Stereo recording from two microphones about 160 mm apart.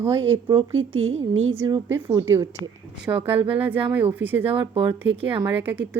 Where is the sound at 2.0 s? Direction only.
15° right (ahead or behind).